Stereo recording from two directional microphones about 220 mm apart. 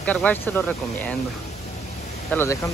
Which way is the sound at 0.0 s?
5° left (ahead or behind).